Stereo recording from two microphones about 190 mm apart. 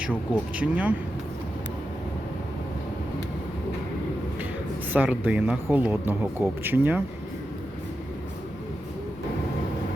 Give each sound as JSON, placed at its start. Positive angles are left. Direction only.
{"t": 0.0, "sound": "speech", "side_deg": -5}
{"t": 4.9, "sound": "speech", "side_deg": -10}